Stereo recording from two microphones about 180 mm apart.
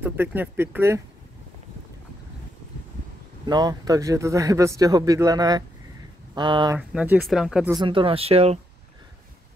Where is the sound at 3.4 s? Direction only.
25° right (ahead or behind).